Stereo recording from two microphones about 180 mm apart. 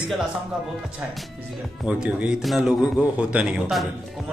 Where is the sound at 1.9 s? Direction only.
5° right (ahead or behind).